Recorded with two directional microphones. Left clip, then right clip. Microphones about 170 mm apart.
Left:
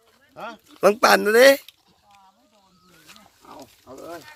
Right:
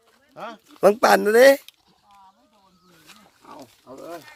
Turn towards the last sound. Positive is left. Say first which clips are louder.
# even
turn(degrees=-15)  # may be behind; listen again after turning